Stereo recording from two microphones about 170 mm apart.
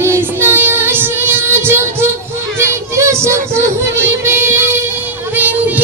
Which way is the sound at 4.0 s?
15° right (ahead or behind).